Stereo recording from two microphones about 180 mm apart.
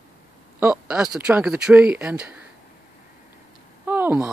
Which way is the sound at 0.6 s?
5° right (ahead or behind).